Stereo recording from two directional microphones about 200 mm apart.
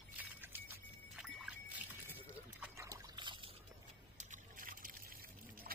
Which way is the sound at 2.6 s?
15° right (ahead or behind).